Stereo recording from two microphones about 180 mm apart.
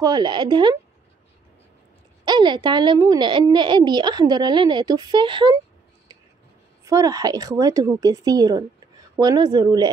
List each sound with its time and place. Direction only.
0.0 s a woman's voice: 25° right (ahead or behind)
2.2 s a woman's voice: 25° right (ahead or behind)
6.8 s a woman's voice: 20° right (ahead or behind)